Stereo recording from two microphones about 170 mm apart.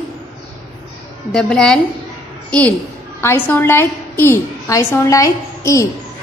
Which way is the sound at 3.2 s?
15° left (ahead or behind).